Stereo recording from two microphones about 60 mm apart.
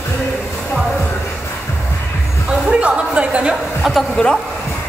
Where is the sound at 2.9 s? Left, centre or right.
Centre.